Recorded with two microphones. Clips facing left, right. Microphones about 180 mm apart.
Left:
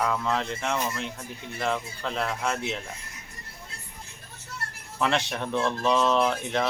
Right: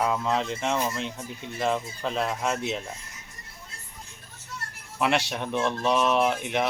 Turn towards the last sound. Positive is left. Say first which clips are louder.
# even
turn(degrees=-15)  # may be behind; listen again after turning